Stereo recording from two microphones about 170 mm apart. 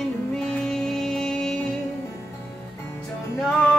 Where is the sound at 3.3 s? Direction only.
5° left (ahead or behind).